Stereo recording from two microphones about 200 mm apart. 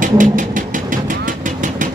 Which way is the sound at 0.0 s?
40° right (ahead or behind).